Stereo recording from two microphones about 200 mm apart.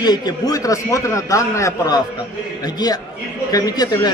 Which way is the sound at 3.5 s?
20° left (ahead or behind).